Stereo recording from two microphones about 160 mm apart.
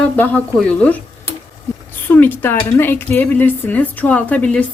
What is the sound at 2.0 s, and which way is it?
A woman's voice, 10° left (ahead or behind).